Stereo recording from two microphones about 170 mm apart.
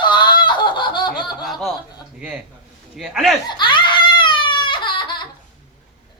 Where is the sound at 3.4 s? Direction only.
30° left (ahead or behind).